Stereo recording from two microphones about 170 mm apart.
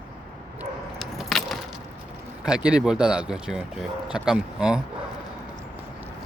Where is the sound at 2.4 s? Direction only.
5° right (ahead or behind).